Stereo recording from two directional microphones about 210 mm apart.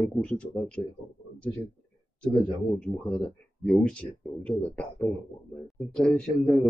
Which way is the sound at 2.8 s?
5° left (ahead or behind).